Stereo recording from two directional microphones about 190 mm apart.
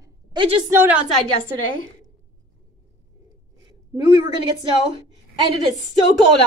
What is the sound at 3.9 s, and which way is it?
Speech, 25° right (ahead or behind).